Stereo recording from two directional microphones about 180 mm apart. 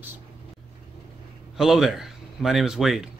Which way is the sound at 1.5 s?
Centre (ahead or behind).